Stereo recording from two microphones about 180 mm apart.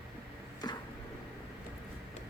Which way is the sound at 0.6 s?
20° left (ahead or behind).